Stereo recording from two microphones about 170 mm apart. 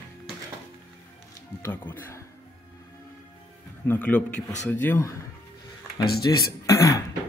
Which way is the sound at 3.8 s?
10° left (ahead or behind).